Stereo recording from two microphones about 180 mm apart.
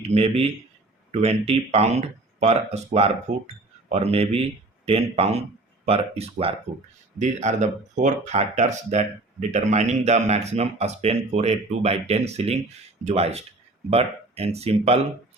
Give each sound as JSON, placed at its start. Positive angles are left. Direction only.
{"t": 0.0, "sound": "speech", "side_deg": -35}